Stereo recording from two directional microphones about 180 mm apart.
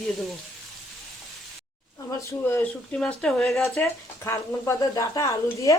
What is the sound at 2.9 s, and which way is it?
Speech, 5° left (ahead or behind).